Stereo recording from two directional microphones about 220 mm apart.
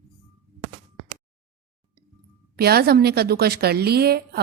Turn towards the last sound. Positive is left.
turn(degrees=-45)  # may be behind; listen again after turning